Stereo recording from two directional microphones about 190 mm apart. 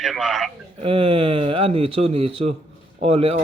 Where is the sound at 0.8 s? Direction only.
30° right (ahead or behind).